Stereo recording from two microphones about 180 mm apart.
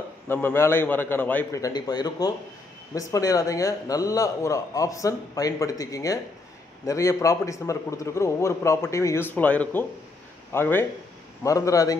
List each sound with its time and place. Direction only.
0.3 s a man's voice: 10° left (ahead or behind)